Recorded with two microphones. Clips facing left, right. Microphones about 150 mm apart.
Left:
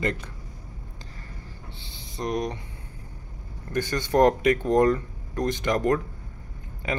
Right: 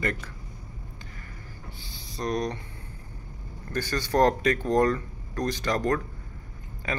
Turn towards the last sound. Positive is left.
turn(degrees=20)  # may be behind; listen again after turning